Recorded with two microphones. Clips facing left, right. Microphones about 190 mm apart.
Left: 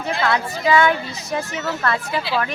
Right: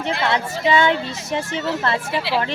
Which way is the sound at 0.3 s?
25° right (ahead or behind).